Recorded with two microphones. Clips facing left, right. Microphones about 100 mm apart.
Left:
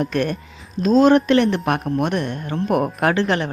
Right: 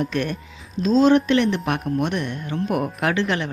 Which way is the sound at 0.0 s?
45° left (ahead or behind).